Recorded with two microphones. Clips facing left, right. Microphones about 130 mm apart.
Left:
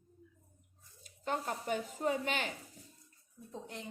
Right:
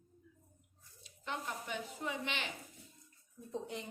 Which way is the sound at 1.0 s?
45° left (ahead or behind).